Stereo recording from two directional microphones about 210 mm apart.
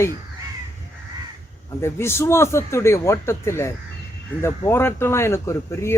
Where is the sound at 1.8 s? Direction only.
10° left (ahead or behind).